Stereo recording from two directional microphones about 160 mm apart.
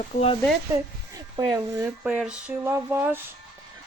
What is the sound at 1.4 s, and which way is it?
Speech, 20° right (ahead or behind).